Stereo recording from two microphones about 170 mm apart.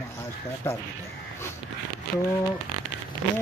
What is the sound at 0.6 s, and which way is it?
Speech, 15° left (ahead or behind).